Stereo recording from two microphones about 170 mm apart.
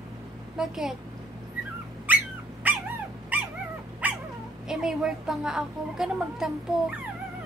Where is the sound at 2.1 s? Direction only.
10° right (ahead or behind).